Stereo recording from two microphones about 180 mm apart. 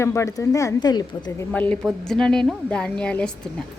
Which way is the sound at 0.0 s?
15° left (ahead or behind).